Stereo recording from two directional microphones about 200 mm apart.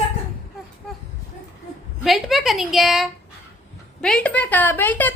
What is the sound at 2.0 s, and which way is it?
A woman's voice, centre (ahead or behind).